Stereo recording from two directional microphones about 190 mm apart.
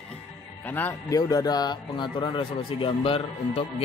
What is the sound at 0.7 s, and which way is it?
A man's voice, 10° left (ahead or behind).